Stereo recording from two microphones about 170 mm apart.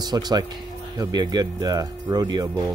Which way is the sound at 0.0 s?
25° right (ahead or behind).